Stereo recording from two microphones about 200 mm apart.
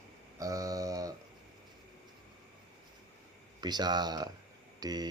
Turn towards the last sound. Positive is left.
turn(degrees=-20)  # may be behind; listen again after turning